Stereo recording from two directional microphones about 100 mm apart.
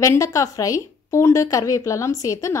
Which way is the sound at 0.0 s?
30° left (ahead or behind).